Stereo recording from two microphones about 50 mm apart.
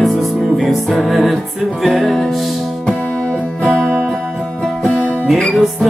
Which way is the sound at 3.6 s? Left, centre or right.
Centre.